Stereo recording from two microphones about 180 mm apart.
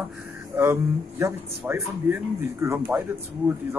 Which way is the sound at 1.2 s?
10° right (ahead or behind).